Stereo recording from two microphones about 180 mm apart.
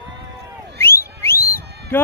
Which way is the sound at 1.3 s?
55° left (ahead or behind).